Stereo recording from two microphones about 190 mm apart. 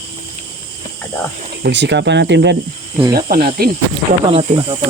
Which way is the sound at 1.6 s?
65° right (ahead or behind).